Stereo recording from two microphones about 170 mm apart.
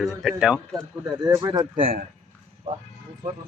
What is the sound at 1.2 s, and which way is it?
Speech, 25° right (ahead or behind).